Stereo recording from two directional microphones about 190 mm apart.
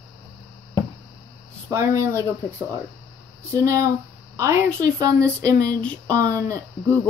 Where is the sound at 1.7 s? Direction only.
15° right (ahead or behind).